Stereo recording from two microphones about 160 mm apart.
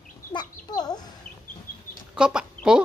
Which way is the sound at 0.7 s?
25° left (ahead or behind).